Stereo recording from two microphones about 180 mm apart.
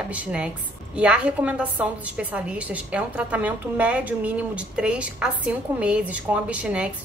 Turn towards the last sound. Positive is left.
turn(degrees=-5)  # may be behind; listen again after turning